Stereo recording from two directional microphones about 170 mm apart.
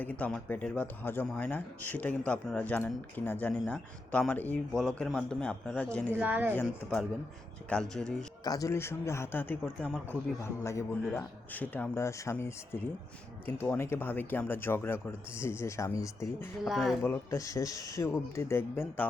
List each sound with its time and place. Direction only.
0.0 s speech: 10° left (ahead or behind)
6.1 s a woman's voice: 10° right (ahead or behind)
6.5 s speech: 10° left (ahead or behind)
8.4 s speech: 20° left (ahead or behind)
16.6 s speech: centre (ahead or behind)
17.0 s speech: 15° left (ahead or behind)